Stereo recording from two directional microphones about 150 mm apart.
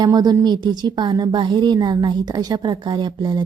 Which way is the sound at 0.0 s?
25° right (ahead or behind).